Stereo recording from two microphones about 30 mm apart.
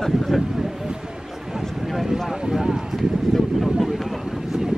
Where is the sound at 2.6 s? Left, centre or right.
Centre.